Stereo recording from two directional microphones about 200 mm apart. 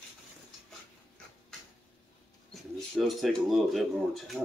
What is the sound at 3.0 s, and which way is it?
Speech, centre (ahead or behind).